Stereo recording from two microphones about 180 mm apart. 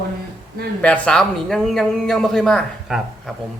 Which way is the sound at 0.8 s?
5° left (ahead or behind).